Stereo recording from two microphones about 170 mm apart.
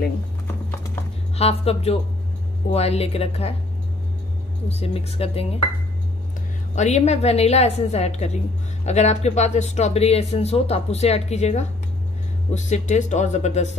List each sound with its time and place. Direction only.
1.3 s speech: 35° left (ahead or behind)
4.6 s speech: 35° left (ahead or behind)
6.7 s speech: 40° left (ahead or behind)